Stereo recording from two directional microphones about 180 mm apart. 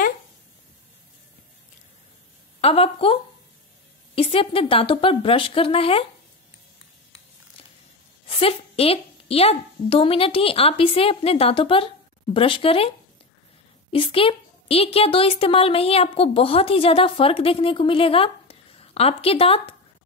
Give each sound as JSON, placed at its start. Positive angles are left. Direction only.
{"t": 2.6, "sound": "a woman's voice", "side_deg": 35}
{"t": 8.3, "sound": "a woman's voice", "side_deg": 30}
{"t": 13.9, "sound": "a woman's voice", "side_deg": 30}